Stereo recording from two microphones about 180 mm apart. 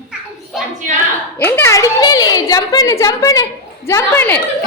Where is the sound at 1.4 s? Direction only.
15° left (ahead or behind).